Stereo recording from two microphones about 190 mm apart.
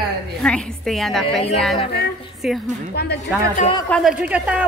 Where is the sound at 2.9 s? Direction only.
55° left (ahead or behind).